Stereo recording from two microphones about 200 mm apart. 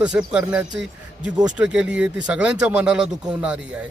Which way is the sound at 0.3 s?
5° right (ahead or behind).